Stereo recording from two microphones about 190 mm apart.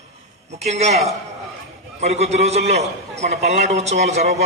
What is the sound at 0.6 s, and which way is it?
A man's voice, 35° right (ahead or behind).